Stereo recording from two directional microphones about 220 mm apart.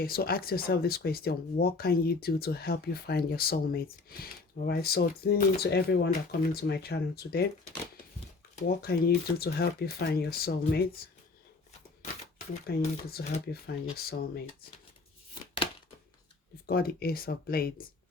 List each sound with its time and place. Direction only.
0.0 s speech: 45° left (ahead or behind)
8.8 s speech: 45° left (ahead or behind)
12.6 s speech: 45° left (ahead or behind)
16.6 s speech: 45° left (ahead or behind)